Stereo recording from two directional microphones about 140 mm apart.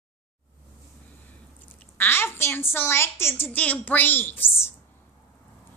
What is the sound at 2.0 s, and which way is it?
A woman's voice, 15° left (ahead or behind).